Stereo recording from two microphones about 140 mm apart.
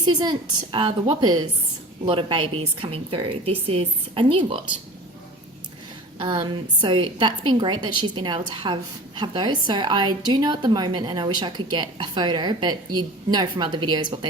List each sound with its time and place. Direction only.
0.0 s a woman's voice: 30° right (ahead or behind)
6.1 s a woman's voice: 35° right (ahead or behind)